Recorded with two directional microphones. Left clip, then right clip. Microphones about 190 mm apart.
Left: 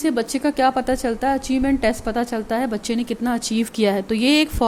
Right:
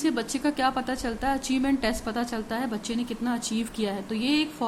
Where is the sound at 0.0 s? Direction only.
30° left (ahead or behind).